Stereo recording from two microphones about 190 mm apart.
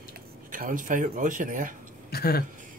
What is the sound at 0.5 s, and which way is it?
Speech, 45° right (ahead or behind).